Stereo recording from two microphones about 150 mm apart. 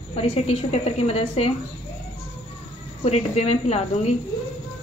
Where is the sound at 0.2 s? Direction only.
45° left (ahead or behind).